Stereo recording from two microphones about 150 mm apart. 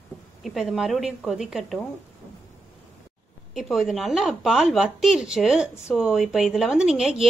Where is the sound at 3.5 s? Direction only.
Centre (ahead or behind).